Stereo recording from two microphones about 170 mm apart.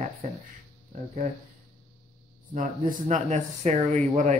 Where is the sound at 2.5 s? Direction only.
50° right (ahead or behind).